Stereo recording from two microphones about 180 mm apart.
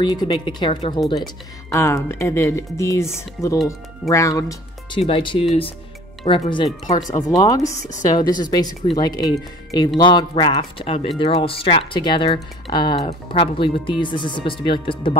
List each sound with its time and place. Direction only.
0.0 s speech: 25° left (ahead or behind)
1.7 s speech: 15° left (ahead or behind)